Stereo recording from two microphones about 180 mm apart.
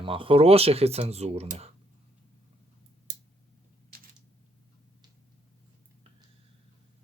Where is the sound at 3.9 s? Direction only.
55° right (ahead or behind).